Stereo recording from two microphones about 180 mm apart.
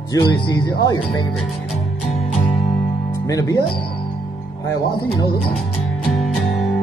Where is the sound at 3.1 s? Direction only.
20° left (ahead or behind).